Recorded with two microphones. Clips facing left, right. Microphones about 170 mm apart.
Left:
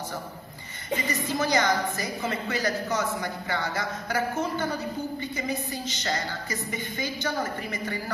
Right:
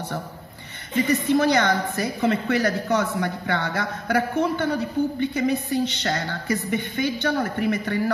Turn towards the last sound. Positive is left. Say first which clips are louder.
# right 8 dB
turn(degrees=-65)  # may be behind; listen again after turning